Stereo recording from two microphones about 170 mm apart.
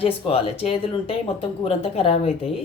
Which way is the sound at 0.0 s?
35° left (ahead or behind).